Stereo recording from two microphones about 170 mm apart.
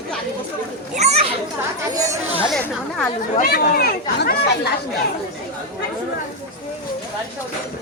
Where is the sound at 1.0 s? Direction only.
40° right (ahead or behind).